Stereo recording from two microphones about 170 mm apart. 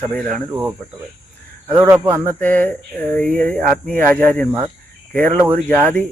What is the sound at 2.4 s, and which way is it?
Speech, 10° left (ahead or behind).